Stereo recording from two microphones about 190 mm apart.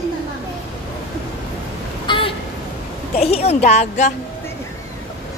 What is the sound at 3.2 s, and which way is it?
Speech, 30° left (ahead or behind).